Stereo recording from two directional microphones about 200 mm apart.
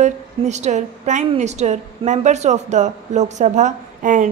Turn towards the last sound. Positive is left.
turn(degrees=-40)  # may be behind; listen again after turning